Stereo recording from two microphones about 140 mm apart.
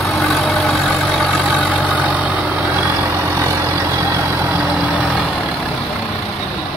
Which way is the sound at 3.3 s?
20° right (ahead or behind).